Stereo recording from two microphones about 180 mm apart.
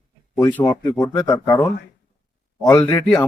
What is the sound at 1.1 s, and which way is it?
Speech, 25° left (ahead or behind).